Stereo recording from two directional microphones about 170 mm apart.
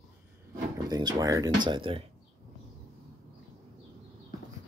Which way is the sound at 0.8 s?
20° right (ahead or behind).